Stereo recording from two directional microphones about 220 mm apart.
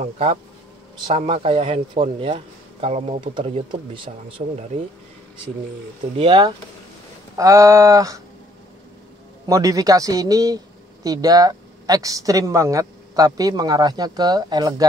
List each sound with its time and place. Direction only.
1.0 s a man's voice: 25° right (ahead or behind)
6.1 s a man's voice: 25° right (ahead or behind)
9.5 s speech: 15° right (ahead or behind)